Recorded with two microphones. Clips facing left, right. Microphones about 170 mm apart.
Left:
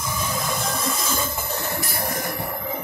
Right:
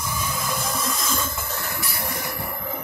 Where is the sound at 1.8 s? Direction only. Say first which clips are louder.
Left 3 dB; 40° left (ahead or behind).